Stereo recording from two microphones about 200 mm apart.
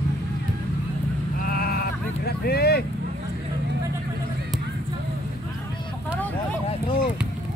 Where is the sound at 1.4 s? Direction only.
45° left (ahead or behind).